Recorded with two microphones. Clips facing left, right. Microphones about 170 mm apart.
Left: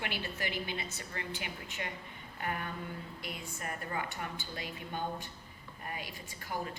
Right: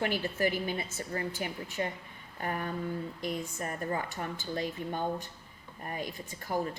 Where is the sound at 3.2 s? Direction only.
35° right (ahead or behind).